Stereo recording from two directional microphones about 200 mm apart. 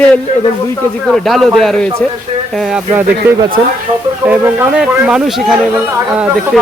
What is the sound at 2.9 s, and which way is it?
Speech, 20° right (ahead or behind).